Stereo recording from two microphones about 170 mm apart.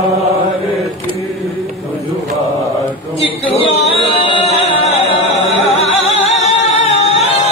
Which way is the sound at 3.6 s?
30° left (ahead or behind).